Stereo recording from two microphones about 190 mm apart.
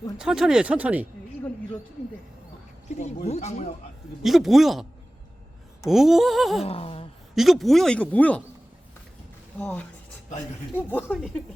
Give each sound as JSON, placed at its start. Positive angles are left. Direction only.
{"t": 0.2, "sound": "speech", "side_deg": -5}
{"t": 2.9, "sound": "speech", "side_deg": 35}
{"t": 4.2, "sound": "speech", "side_deg": 0}
{"t": 6.7, "sound": "a sound", "side_deg": 30}
{"t": 7.3, "sound": "speech", "side_deg": 0}
{"t": 9.6, "sound": "speech", "side_deg": 5}
{"t": 10.8, "sound": "speech", "side_deg": 5}